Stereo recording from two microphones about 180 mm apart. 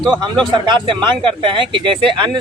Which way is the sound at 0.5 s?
25° right (ahead or behind).